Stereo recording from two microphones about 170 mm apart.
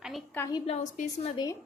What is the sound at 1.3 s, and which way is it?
Speech, 25° left (ahead or behind).